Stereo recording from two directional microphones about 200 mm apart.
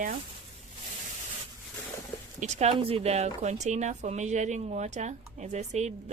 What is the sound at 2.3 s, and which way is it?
Speech, 35° right (ahead or behind).